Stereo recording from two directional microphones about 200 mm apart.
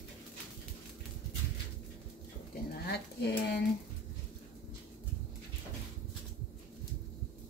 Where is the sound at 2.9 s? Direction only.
55° left (ahead or behind).